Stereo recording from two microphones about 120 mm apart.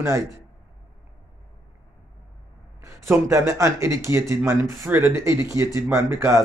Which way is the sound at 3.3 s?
25° right (ahead or behind).